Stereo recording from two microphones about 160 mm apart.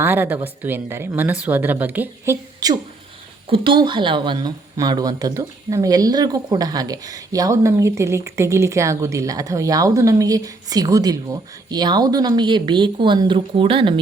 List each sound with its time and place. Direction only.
0.0 s speech: 10° right (ahead or behind)
3.5 s speech: 30° right (ahead or behind)